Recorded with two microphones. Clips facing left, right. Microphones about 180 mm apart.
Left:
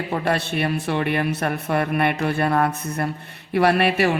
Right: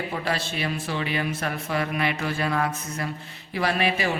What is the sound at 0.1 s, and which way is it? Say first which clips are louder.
Speech: left 6 dB; 60° left (ahead or behind).